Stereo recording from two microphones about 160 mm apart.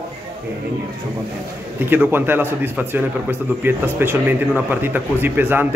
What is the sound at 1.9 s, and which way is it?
A man's voice, 15° right (ahead or behind).